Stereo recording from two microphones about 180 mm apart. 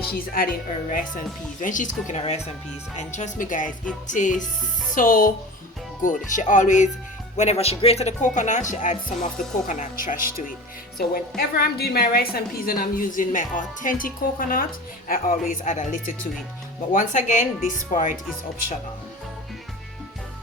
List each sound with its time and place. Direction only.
0.9 s a woman's voice: 50° left (ahead or behind)